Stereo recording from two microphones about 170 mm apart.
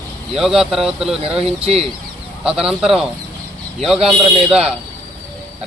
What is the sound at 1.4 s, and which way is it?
Speech, 35° right (ahead or behind).